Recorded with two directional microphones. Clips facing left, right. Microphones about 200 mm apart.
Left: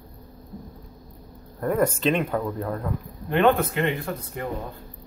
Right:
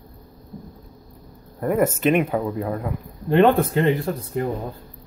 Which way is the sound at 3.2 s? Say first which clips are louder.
Right 4 dB; 30° right (ahead or behind).